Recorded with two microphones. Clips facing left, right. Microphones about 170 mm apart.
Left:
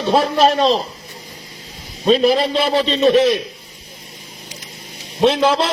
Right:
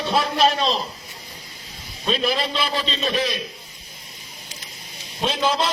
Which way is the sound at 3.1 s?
65° left (ahead or behind).